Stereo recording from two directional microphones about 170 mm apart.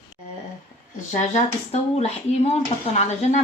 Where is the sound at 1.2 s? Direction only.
40° left (ahead or behind).